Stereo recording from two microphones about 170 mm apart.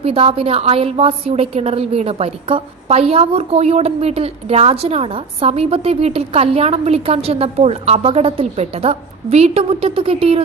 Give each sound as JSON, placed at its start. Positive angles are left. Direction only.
{"t": 0.0, "sound": "a woman's voice", "side_deg": -35}